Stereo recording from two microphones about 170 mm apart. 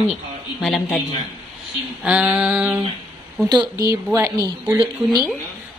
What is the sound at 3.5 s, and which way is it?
A woman's voice, 20° right (ahead or behind).